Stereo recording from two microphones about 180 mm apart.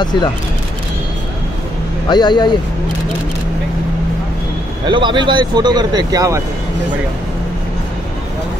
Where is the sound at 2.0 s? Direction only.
25° left (ahead or behind).